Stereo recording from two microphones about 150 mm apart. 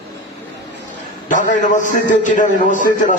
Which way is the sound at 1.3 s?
60° left (ahead or behind).